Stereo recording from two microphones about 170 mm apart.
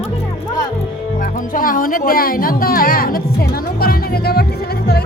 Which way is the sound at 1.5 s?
55° left (ahead or behind).